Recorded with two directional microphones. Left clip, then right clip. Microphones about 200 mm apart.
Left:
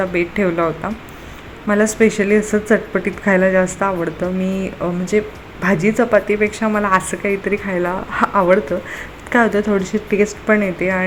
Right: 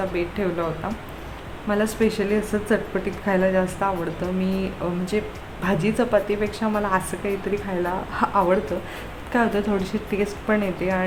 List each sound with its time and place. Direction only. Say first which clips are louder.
0.1 s a woman's voice: left 7 dB; 20° left (ahead or behind)